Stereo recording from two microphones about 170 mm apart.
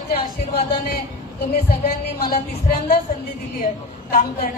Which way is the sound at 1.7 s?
60° left (ahead or behind).